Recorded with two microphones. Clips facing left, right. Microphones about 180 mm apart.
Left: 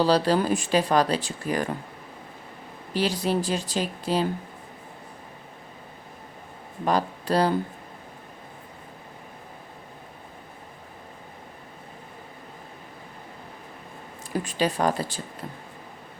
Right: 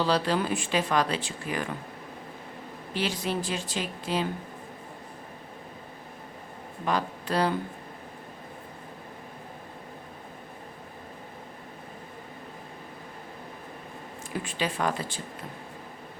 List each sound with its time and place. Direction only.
0.0 s speech: 35° left (ahead or behind)
2.9 s speech: 35° left (ahead or behind)
6.8 s speech: 35° left (ahead or behind)
14.4 s speech: 40° left (ahead or behind)